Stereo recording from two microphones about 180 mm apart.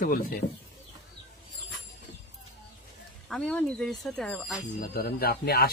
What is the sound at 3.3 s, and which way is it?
Speech, 5° left (ahead or behind).